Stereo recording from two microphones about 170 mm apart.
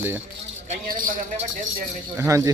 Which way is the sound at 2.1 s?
15° right (ahead or behind).